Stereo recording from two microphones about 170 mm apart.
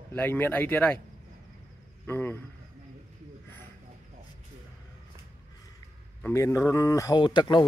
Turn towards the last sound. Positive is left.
turn(degrees=25)  # may be behind; listen again after turning